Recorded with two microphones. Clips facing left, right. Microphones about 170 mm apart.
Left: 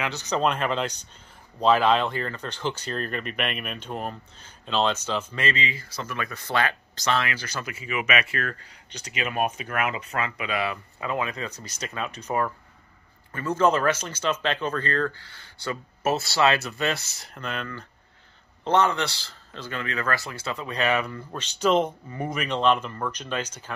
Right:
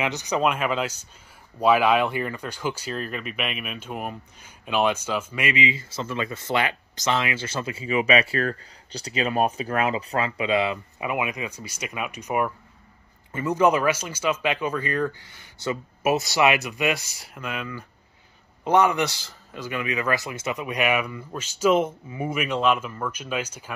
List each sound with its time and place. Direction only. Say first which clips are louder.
0.0 s speech: right 2 dB; 15° right (ahead or behind)